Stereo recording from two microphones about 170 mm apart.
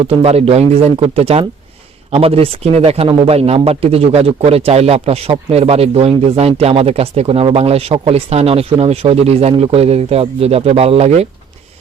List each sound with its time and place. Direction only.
0.0 s speech: 35° right (ahead or behind)